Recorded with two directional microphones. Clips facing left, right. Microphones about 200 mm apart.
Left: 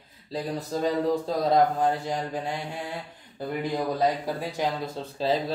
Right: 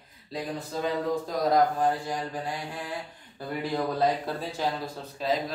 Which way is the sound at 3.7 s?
15° left (ahead or behind).